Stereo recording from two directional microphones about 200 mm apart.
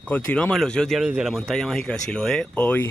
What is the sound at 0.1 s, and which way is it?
Speech, 5° left (ahead or behind).